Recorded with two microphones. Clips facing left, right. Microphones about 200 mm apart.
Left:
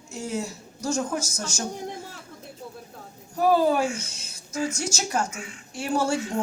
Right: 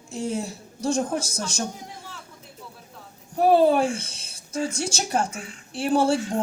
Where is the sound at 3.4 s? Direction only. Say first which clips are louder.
Right 3 dB; 30° right (ahead or behind).